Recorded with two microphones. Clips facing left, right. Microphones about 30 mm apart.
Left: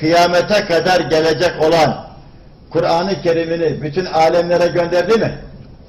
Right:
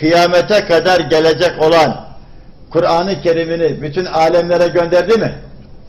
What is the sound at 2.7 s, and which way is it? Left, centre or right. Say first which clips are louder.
Speech: right 2 dB; centre.